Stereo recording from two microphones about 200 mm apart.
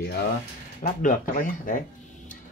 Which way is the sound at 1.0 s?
40° left (ahead or behind).